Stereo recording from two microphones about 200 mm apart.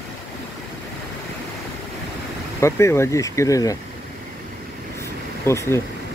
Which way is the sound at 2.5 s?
15° left (ahead or behind).